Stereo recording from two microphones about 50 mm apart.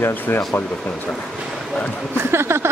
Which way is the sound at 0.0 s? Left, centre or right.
Left.